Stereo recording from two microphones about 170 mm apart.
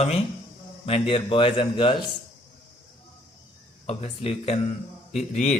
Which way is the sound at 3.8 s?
35° left (ahead or behind).